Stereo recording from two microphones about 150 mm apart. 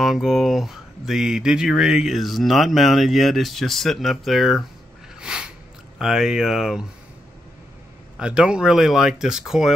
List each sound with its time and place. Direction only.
0.0 s speech: centre (ahead or behind)
5.2 s a sound: 5° right (ahead or behind)
5.9 s speech: 5° right (ahead or behind)
8.2 s speech: 5° right (ahead or behind)